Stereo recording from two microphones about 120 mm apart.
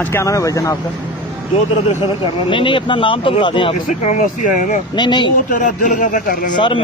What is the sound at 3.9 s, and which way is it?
Speech, 85° left.